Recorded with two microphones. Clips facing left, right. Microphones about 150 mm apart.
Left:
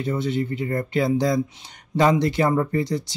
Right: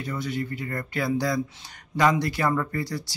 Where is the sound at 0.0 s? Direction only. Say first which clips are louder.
Left 6 dB; 25° left (ahead or behind).